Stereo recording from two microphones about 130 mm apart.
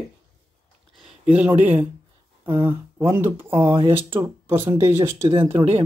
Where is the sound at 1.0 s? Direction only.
10° right (ahead or behind).